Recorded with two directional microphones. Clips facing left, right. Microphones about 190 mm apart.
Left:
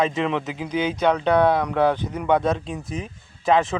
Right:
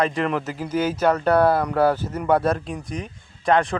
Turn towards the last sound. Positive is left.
turn(degrees=0)  # may be behind; listen again after turning